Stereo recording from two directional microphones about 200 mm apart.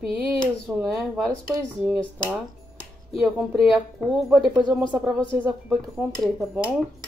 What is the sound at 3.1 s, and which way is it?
Speech, centre (ahead or behind).